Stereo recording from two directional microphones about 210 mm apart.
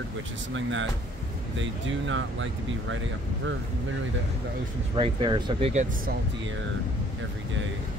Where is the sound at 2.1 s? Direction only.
65° right (ahead or behind).